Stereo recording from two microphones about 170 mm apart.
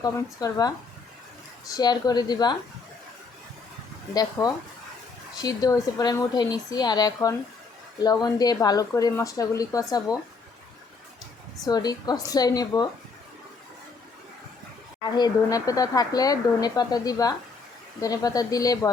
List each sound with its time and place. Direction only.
0.0 s speech: 20° left (ahead or behind)
1.7 s speech: 25° left (ahead or behind)
4.1 s speech: 20° left (ahead or behind)
11.6 s speech: 25° left (ahead or behind)
15.0 s speech: 25° left (ahead or behind)